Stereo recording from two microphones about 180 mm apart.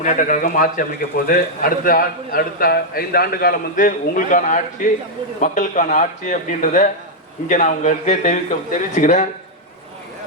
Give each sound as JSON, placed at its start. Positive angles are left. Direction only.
{"t": 0.0, "sound": "a man's voice", "side_deg": 45}